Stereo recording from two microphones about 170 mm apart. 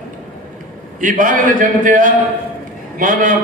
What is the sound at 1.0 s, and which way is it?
A man's voice, 50° right (ahead or behind).